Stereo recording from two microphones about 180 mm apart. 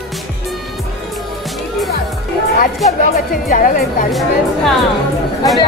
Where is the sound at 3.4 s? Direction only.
50° left (ahead or behind).